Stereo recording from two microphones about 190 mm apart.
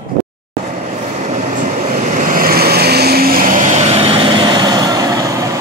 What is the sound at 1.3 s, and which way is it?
Vehicle, 40° right (ahead or behind).